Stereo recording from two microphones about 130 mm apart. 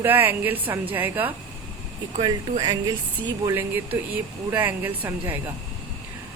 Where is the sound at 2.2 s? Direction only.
30° right (ahead or behind).